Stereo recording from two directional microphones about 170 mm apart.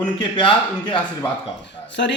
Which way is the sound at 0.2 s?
30° left (ahead or behind).